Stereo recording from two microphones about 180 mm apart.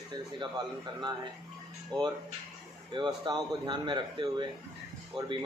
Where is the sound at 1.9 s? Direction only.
25° right (ahead or behind).